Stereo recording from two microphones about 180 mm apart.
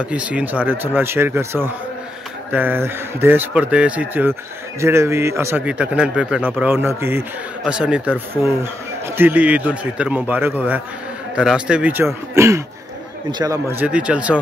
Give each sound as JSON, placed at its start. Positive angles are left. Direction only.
{"t": 0.0, "sound": "a man's voice", "side_deg": -5}